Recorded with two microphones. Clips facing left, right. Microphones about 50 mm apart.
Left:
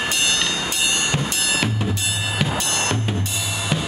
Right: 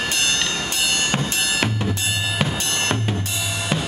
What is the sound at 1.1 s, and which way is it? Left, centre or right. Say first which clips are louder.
Music: even; right.